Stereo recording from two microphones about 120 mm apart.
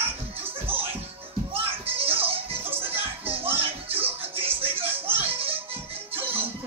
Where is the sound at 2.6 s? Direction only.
15° right (ahead or behind).